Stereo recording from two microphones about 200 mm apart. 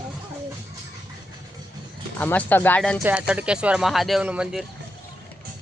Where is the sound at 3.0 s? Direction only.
5° right (ahead or behind).